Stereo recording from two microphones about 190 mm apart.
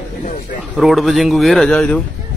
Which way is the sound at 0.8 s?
Centre (ahead or behind).